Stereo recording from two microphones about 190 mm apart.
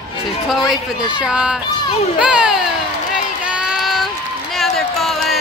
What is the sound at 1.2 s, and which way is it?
A child's voice, 5° right (ahead or behind).